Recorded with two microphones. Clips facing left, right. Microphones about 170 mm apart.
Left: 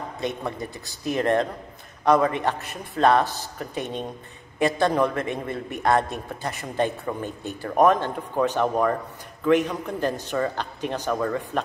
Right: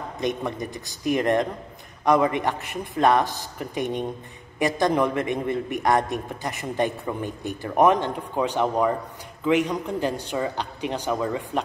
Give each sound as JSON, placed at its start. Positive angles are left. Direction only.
{"t": 0.2, "sound": "a man's voice", "side_deg": -15}